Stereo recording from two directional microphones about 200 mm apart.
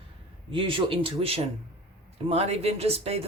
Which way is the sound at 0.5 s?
25° right (ahead or behind).